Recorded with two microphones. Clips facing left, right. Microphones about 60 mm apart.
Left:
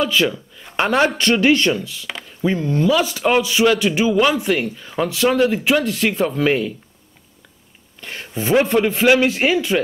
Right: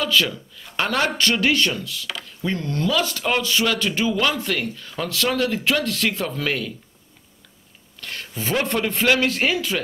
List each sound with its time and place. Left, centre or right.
0.0 s speech: centre
8.0 s speech: centre